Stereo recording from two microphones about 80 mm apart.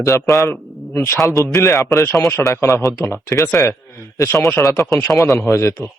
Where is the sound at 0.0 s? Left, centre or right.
Left.